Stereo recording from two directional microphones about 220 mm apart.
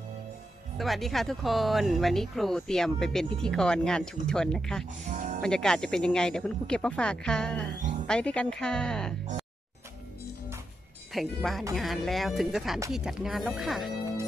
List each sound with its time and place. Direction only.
0.7 s speech: centre (ahead or behind)
5.1 s music: 35° right (ahead or behind)
5.4 s speech: 5° left (ahead or behind)
11.1 s speech: centre (ahead or behind)